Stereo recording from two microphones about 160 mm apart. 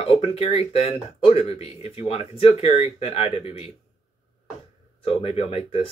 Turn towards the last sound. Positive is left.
turn(degrees=40)  # may be behind; listen again after turning